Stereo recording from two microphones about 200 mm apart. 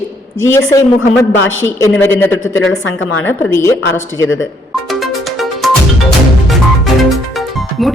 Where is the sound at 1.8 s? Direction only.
10° left (ahead or behind).